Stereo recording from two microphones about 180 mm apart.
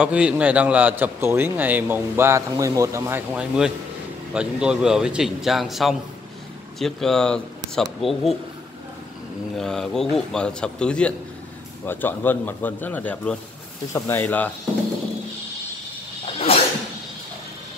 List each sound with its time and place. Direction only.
0.0 s a man's voice: 5° right (ahead or behind)
9.6 s a man's voice: centre (ahead or behind)
16.5 s a sound: 35° left (ahead or behind)